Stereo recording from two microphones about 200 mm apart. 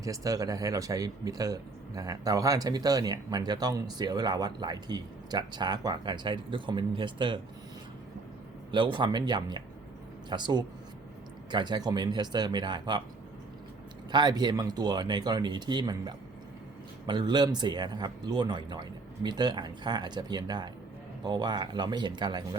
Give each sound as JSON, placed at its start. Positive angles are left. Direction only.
{"t": 0.0, "sound": "speech", "side_deg": -15}
{"t": 8.7, "sound": "speech", "side_deg": -25}
{"t": 14.1, "sound": "speech", "side_deg": -20}